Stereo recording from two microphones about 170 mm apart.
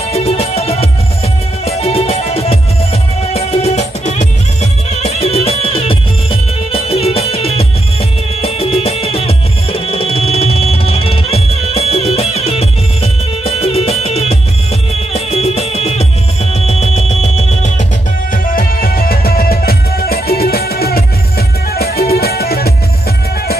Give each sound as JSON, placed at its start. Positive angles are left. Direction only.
{"t": 0.1, "sound": "music", "side_deg": 35}
{"t": 18.3, "sound": "music", "side_deg": 55}